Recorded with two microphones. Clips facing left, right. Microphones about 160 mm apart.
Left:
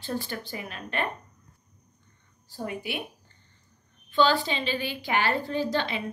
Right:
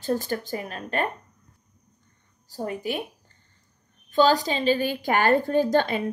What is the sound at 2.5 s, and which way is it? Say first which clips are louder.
Speech: right 4 dB; 40° right (ahead or behind).